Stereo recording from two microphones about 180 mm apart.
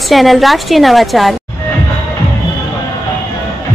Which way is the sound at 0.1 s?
Centre (ahead or behind).